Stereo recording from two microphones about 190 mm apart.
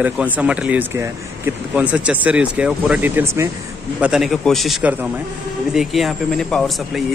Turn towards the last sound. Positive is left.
turn(degrees=0)  # may be behind; listen again after turning